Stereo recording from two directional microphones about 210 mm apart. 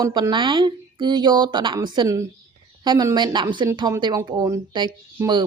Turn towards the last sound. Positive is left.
turn(degrees=-20)  # may be behind; listen again after turning